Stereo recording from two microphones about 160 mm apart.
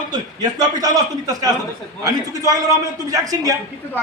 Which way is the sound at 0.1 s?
25° right (ahead or behind).